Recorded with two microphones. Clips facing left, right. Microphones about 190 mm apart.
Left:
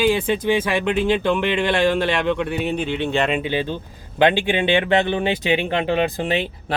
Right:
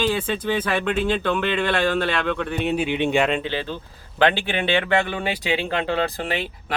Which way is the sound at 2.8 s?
15° right (ahead or behind).